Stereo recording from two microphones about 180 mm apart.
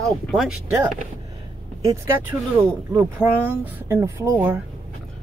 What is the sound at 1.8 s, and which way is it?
Speech, 15° right (ahead or behind).